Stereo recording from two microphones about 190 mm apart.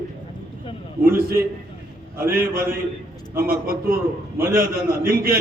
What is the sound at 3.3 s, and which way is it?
A man's voice, 50° right (ahead or behind).